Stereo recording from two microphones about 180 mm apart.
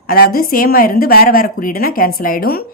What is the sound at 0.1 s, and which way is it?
A woman's voice, 55° left (ahead or behind).